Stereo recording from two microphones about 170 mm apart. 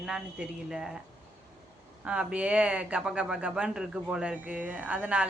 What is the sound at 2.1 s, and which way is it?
Speech, 5° right (ahead or behind).